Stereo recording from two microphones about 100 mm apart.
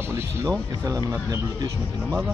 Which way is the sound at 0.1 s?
30° right (ahead or behind).